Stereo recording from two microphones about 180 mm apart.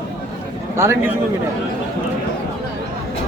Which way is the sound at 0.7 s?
15° right (ahead or behind).